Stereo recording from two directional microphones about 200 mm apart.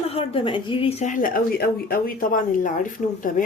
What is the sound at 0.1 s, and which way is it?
A woman's voice, 30° left (ahead or behind).